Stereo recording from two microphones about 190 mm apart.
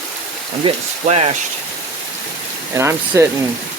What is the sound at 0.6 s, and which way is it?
Speech, 35° right (ahead or behind).